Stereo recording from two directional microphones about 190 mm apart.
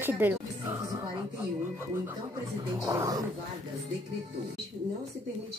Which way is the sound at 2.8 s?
20° right (ahead or behind).